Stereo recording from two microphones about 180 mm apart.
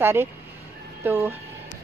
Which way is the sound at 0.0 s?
15° right (ahead or behind).